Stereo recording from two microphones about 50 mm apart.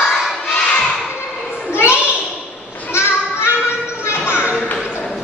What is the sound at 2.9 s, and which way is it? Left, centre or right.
Children playing, left.